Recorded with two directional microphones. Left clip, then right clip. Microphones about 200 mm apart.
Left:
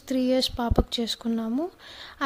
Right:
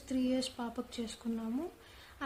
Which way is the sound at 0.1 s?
40° left (ahead or behind).